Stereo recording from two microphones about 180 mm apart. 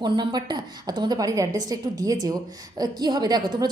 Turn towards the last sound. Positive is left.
turn(degrees=-25)  # may be behind; listen again after turning